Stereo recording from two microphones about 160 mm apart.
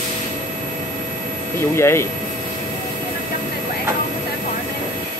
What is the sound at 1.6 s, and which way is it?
Speech, 15° left (ahead or behind).